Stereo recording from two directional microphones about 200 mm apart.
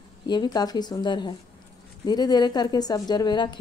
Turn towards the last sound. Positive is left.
turn(degrees=20)  # may be behind; listen again after turning